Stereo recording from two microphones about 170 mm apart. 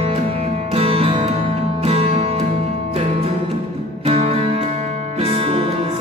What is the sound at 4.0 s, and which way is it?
Music, 35° right (ahead or behind).